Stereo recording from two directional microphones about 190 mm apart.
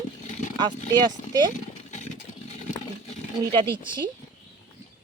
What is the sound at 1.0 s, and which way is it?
Speech, 20° right (ahead or behind).